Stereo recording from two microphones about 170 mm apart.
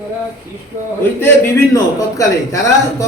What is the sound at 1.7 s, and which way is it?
Speech, 20° left (ahead or behind).